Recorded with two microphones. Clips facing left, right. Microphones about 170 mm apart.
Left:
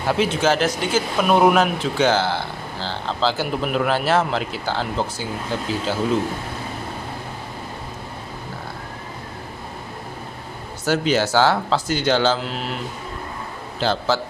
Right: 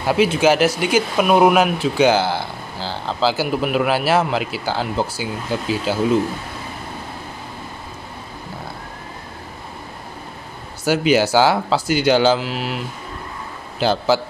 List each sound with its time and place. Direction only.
0.1 s speech: 10° right (ahead or behind)
10.9 s speech: 10° right (ahead or behind)